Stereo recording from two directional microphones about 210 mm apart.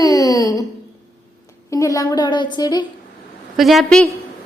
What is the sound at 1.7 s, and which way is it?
A woman's voice, 15° left (ahead or behind).